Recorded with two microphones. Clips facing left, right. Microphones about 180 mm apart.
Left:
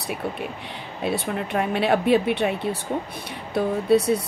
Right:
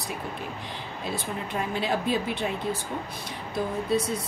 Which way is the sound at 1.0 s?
65° left (ahead or behind).